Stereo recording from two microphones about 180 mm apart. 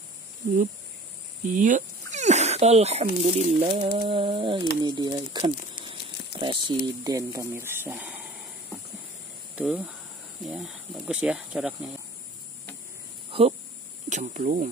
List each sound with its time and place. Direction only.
1.4 s speech: 45° right (ahead or behind)
3.6 s a sound: 25° right (ahead or behind)
6.4 s a sound: 25° right (ahead or behind)
7.1 s speech: 20° right (ahead or behind)
9.6 s speech: 5° right (ahead or behind)
13.3 s speech: 35° right (ahead or behind)